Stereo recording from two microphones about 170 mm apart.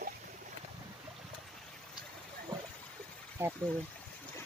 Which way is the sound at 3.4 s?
15° right (ahead or behind).